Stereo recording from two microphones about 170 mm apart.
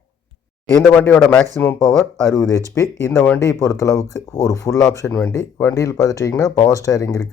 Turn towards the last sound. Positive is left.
turn(degrees=20)  # may be behind; listen again after turning